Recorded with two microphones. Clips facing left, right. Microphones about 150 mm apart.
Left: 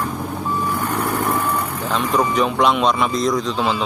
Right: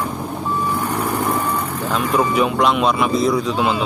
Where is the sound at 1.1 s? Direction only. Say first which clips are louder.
Even; centre (ahead or behind).